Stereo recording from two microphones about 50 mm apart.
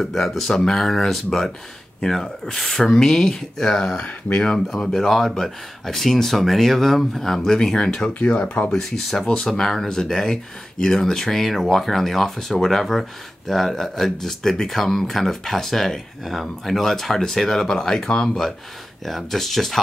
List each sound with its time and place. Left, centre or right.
0.0 s speech: centre
8.1 s speech: left
8.7 s speech: centre